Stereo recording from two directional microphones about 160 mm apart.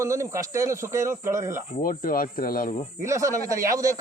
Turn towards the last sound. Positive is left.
turn(degrees=-20)  # may be behind; listen again after turning